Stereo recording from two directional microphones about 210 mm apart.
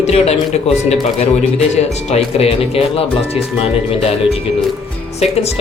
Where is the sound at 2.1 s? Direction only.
30° left (ahead or behind).